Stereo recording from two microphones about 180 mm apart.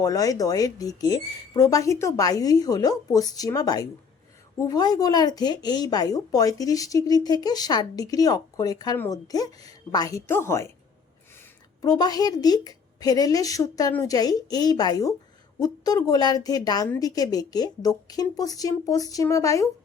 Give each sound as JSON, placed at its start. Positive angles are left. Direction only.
{"t": 0.0, "sound": "speech", "side_deg": 20}
{"t": 11.8, "sound": "speech", "side_deg": 20}